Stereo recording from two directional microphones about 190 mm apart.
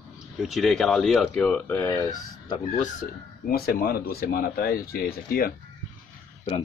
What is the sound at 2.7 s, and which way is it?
Speech, 45° left (ahead or behind).